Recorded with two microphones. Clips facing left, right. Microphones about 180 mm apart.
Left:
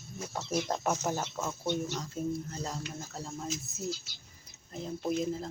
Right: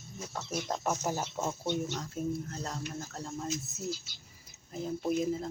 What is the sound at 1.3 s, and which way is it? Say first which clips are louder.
Speech: even; 20° right (ahead or behind).